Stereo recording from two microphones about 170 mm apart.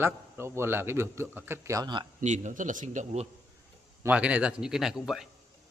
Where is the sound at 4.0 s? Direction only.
10° right (ahead or behind).